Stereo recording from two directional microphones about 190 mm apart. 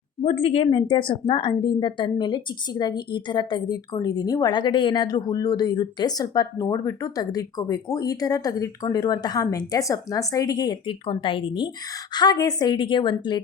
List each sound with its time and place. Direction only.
0.3 s a woman's voice: 30° left (ahead or behind)